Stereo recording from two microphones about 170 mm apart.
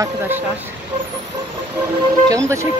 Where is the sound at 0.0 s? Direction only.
10° right (ahead or behind).